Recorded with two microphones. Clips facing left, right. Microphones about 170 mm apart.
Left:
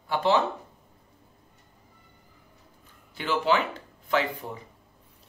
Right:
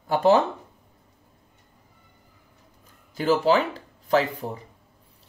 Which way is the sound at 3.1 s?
40° right (ahead or behind).